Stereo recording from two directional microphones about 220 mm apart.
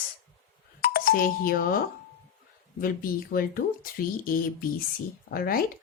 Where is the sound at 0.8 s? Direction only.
40° left (ahead or behind).